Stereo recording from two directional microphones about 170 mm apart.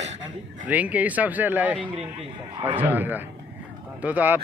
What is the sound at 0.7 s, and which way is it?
Speech, 10° right (ahead or behind).